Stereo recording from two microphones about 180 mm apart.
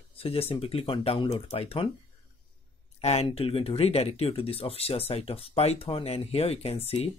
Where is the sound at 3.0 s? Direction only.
35° left (ahead or behind).